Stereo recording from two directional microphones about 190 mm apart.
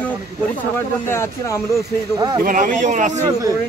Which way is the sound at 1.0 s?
15° left (ahead or behind).